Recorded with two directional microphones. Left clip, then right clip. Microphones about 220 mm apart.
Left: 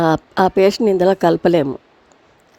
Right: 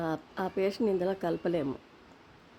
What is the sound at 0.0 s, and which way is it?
A woman's voice, 45° left (ahead or behind).